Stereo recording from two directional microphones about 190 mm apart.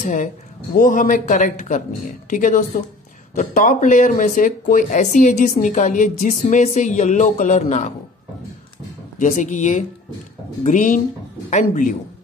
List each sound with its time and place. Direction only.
0.0 s a man's voice: 40° left (ahead or behind)
9.2 s speech: 40° left (ahead or behind)